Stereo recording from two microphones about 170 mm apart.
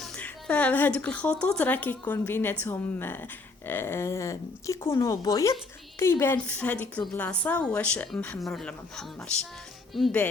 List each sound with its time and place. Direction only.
0.0 s a woman's voice: 5° left (ahead or behind)